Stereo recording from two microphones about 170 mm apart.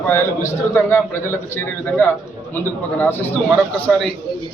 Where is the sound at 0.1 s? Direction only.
15° left (ahead or behind).